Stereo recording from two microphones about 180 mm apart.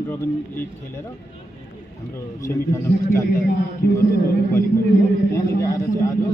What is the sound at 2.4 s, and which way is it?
Speech, 15° left (ahead or behind).